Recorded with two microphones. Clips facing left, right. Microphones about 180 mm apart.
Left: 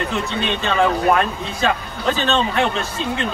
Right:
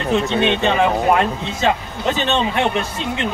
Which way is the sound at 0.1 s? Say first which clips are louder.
Right 6 dB; 20° right (ahead or behind).